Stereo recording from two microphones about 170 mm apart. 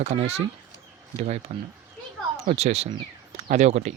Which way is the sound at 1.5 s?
45° right (ahead or behind).